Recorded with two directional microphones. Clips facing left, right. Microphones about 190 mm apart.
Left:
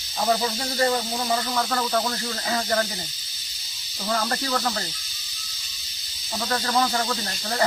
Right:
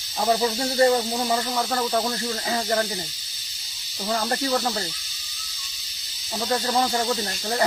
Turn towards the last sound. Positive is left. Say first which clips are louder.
# right 1 dB
turn(degrees=-20)  # may be behind; listen again after turning